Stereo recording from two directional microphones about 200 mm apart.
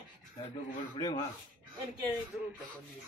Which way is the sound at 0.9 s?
20° left (ahead or behind).